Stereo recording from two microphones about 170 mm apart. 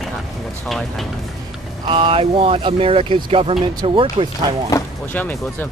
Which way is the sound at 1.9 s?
30° right (ahead or behind).